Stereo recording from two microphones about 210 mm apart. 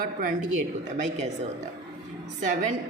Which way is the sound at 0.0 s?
40° right (ahead or behind).